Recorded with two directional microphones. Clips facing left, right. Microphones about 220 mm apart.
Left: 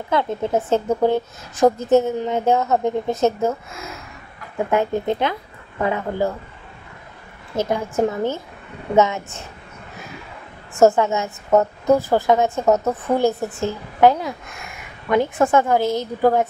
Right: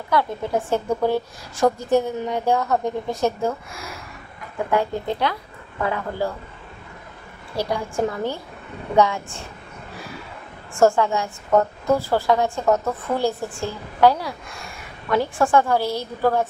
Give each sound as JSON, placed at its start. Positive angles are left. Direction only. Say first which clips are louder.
{"t": 0.1, "sound": "a woman's voice", "louder": "left 2 dB", "side_deg": 20}
{"t": 7.5, "sound": "a woman's voice", "louder": "left 3 dB", "side_deg": 20}
{"t": 10.7, "sound": "a woman's voice", "louder": "left 2 dB", "side_deg": 20}